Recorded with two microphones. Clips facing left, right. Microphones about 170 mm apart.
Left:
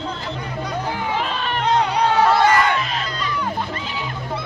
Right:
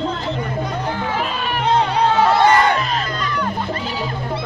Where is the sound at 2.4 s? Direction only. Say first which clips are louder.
Right 3 dB; 35° right (ahead or behind).